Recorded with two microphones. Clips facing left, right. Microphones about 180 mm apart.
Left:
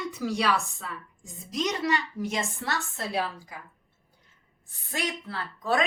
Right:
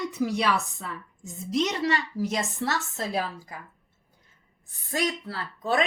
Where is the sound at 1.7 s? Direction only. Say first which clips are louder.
Right 1 dB; 35° right (ahead or behind).